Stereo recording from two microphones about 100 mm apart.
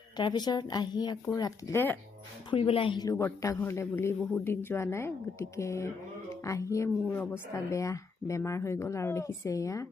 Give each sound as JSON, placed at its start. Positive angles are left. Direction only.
{"t": 0.2, "sound": "speech", "side_deg": 45}
{"t": 1.4, "sound": "music", "side_deg": 35}
{"t": 1.7, "sound": "speech", "side_deg": 20}
{"t": 2.5, "sound": "a woman's voice", "side_deg": 65}
{"t": 3.2, "sound": "speech", "side_deg": 30}
{"t": 6.4, "sound": "music", "side_deg": 30}
{"t": 7.1, "sound": "speech", "side_deg": 20}